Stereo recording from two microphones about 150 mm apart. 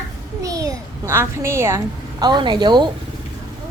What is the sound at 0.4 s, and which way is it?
A child's voice, 25° right (ahead or behind).